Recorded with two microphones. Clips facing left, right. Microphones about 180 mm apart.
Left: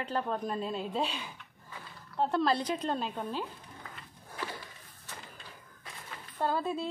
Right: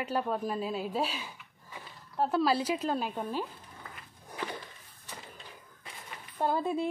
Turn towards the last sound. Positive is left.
turn(degrees=-15)  # may be behind; listen again after turning